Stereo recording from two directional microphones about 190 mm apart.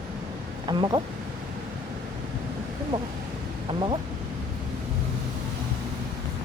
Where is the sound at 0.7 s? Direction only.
20° right (ahead or behind).